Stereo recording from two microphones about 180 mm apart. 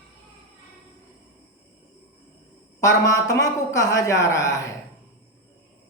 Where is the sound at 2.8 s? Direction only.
20° left (ahead or behind).